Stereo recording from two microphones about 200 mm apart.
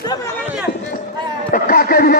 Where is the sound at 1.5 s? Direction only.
50° left (ahead or behind).